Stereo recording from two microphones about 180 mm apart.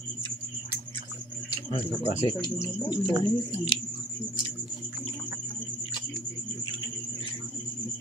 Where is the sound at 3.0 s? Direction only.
25° right (ahead or behind).